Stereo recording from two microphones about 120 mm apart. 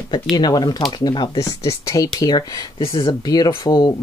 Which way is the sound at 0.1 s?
35° left (ahead or behind).